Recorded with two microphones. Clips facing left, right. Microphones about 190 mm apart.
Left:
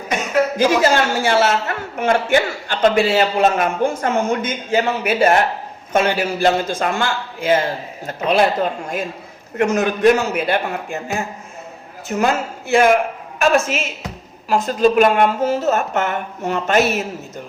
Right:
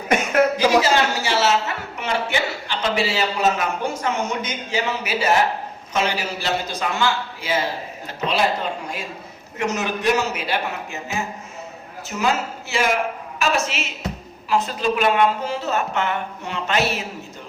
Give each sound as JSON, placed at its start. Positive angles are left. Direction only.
{"t": 0.5, "sound": "a man's voice", "side_deg": 50}
{"t": 9.6, "sound": "a man's voice", "side_deg": 55}